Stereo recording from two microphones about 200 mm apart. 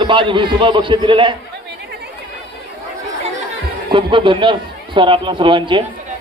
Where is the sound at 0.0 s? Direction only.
25° right (ahead or behind).